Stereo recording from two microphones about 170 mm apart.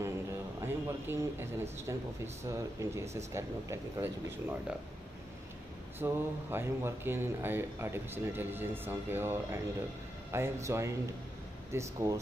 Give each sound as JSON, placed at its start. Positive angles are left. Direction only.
{"t": 0.6, "sound": "speech", "side_deg": -15}
{"t": 5.9, "sound": "speech", "side_deg": -15}